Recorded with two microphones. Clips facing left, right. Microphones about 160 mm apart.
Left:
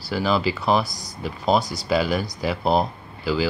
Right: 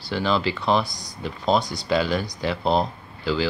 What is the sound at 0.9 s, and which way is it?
Speech, 15° right (ahead or behind).